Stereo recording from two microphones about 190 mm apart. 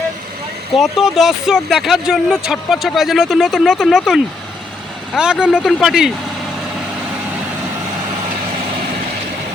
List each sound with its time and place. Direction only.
0.8 s speech: centre (ahead or behind)